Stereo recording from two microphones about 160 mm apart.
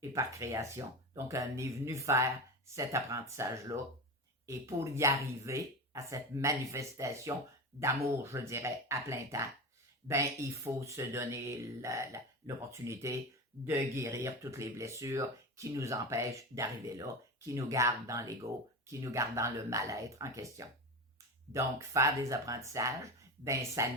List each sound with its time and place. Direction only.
0.0 s speech: 20° right (ahead or behind)